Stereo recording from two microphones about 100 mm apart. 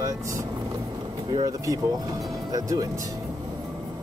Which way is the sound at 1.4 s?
35° right (ahead or behind).